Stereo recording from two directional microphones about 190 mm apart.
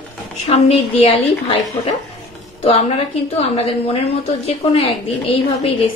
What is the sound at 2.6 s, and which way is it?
A woman's voice, 35° left (ahead or behind).